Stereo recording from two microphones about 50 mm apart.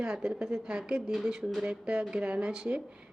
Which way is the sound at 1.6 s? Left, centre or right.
Centre.